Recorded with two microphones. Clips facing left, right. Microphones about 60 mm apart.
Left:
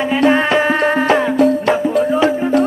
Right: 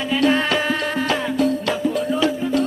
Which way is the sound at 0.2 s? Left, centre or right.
Left.